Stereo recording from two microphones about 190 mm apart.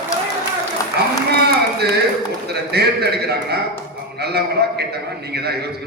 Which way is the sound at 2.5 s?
60° right (ahead or behind).